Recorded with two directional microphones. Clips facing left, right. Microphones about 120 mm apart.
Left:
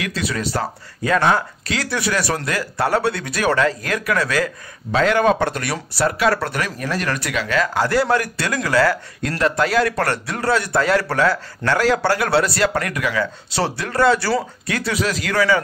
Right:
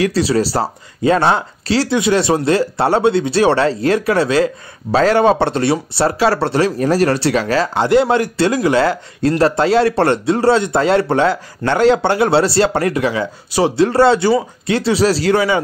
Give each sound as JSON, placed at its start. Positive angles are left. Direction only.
{"t": 0.0, "sound": "speech", "side_deg": -30}